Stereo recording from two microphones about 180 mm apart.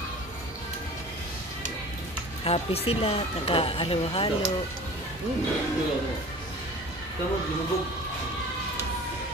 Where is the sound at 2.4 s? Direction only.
35° left (ahead or behind).